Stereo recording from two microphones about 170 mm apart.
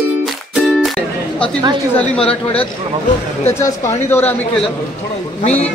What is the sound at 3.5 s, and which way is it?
A woman's voice, 15° left (ahead or behind).